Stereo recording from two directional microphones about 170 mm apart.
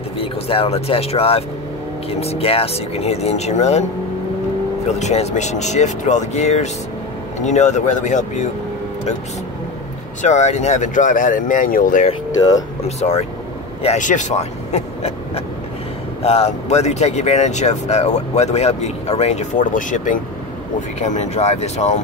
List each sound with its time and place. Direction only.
0.2 s speech: 35° left (ahead or behind)
4.8 s speech: 40° left (ahead or behind)
10.2 s speech: 40° left (ahead or behind)
12.4 s speech: 20° left (ahead or behind)
12.8 s speech: 40° left (ahead or behind)